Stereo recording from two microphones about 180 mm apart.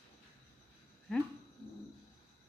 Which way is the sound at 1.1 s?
Centre (ahead or behind).